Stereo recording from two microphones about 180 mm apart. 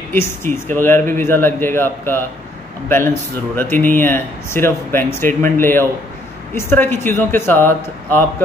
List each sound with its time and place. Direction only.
0.1 s speech: 10° left (ahead or behind)
3.7 s speech: 45° right (ahead or behind)
4.0 s speech: 10° left (ahead or behind)